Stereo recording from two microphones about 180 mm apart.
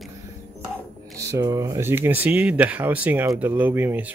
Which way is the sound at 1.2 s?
20° right (ahead or behind).